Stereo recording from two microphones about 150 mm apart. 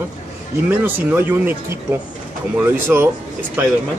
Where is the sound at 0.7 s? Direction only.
10° right (ahead or behind).